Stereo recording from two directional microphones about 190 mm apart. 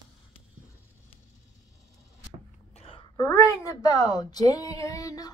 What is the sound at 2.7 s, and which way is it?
A woman's voice, 30° left (ahead or behind).